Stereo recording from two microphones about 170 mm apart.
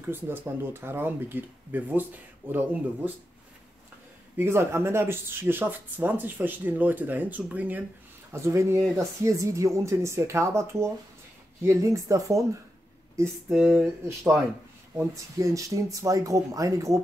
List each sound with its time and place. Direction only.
0.0 s speech: 15° right (ahead or behind)
4.4 s speech: 15° right (ahead or behind)
13.1 s a sound: 15° right (ahead or behind)
13.6 s speech: centre (ahead or behind)
15.0 s speech: 20° right (ahead or behind)